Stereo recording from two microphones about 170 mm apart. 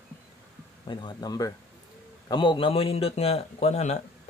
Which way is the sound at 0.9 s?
25° left (ahead or behind).